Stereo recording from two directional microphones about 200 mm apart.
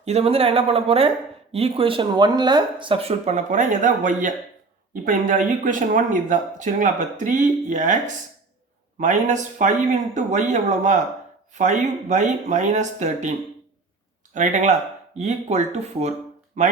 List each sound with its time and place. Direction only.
0.0 s speech: 30° right (ahead or behind)
14.3 s speech: 35° right (ahead or behind)